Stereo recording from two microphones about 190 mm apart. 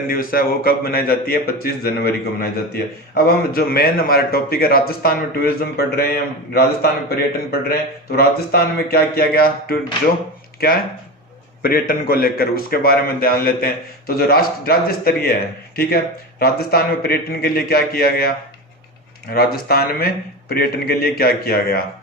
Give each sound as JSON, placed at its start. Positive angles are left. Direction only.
{"t": 0.1, "sound": "a man's voice", "side_deg": 50}
{"t": 11.6, "sound": "a man's voice", "side_deg": 50}
{"t": 19.3, "sound": "a man's voice", "side_deg": 55}